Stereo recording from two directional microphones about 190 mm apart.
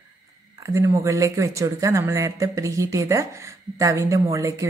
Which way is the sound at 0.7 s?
15° right (ahead or behind).